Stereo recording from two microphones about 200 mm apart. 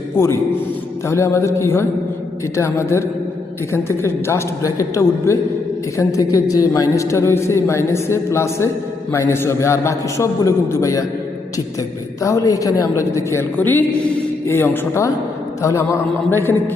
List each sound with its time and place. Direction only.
1.0 s a man's voice: 15° left (ahead or behind)
12.2 s a man's voice: 15° left (ahead or behind)
16.3 s a man's voice: 10° left (ahead or behind)